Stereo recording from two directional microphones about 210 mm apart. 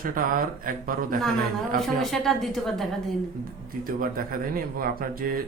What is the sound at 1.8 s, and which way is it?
A woman's voice, centre (ahead or behind).